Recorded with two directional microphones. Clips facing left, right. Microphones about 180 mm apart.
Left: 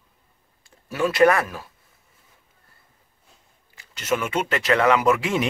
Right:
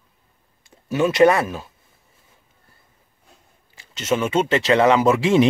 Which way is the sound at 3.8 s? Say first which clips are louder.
Right 3 dB; 25° right (ahead or behind).